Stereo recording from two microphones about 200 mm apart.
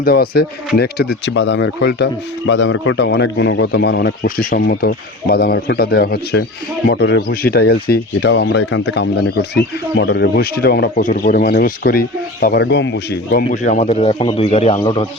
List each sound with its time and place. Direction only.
0.0 s speech: 50° left (ahead or behind)
2.5 s speech: 70° left (ahead or behind)
13.5 s a man's voice: 40° left (ahead or behind)